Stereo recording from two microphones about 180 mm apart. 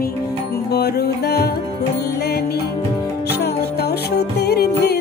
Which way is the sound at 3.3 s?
65° left (ahead or behind).